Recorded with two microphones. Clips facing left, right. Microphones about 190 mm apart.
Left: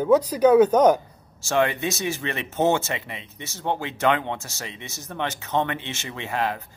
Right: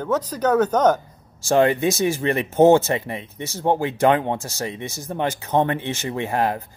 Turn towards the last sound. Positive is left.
turn(degrees=-35)  # may be behind; listen again after turning